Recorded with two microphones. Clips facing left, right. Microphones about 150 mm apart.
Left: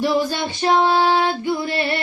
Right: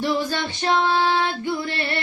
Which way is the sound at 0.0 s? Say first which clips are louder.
Left 4 dB; 15° left (ahead or behind).